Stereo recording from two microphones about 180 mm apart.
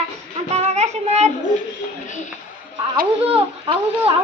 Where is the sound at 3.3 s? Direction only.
30° right (ahead or behind).